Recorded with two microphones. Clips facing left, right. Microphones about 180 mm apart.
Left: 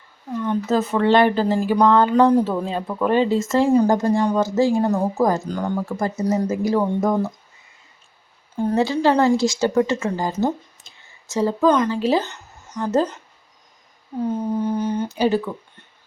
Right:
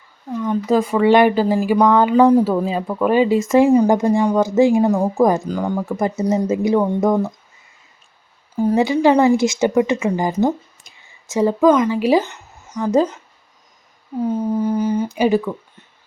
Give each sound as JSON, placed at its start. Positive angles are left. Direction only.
{"t": 0.3, "sound": "speech", "side_deg": -10}
{"t": 8.5, "sound": "speech", "side_deg": -10}
{"t": 14.3, "sound": "speech", "side_deg": -10}